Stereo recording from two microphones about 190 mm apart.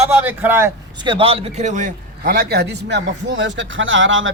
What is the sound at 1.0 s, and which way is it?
A man's voice, 25° right (ahead or behind).